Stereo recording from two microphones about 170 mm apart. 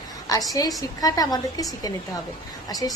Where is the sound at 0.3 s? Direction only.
20° left (ahead or behind).